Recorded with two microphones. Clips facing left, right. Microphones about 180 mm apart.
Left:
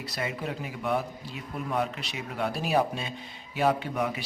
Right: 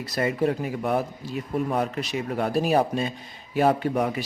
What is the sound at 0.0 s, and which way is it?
Speech, 45° right (ahead or behind).